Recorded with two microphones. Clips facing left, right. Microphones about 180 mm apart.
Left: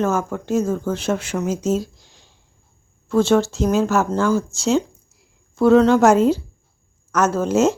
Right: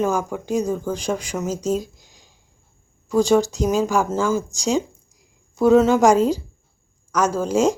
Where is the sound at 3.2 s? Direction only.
15° right (ahead or behind).